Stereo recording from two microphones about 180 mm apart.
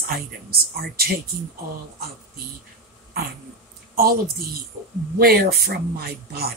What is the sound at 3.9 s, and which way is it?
A woman's voice, 55° right (ahead or behind).